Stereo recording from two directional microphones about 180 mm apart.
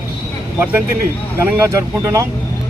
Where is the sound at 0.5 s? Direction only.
10° right (ahead or behind).